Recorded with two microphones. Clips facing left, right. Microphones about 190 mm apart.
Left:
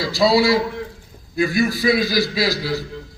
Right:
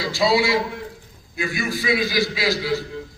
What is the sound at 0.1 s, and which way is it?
A man's voice, 40° left (ahead or behind).